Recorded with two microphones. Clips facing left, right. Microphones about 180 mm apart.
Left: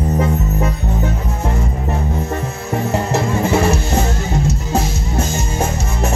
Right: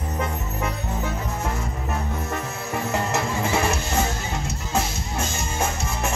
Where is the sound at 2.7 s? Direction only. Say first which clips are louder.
Left 7 dB; 35° left (ahead or behind).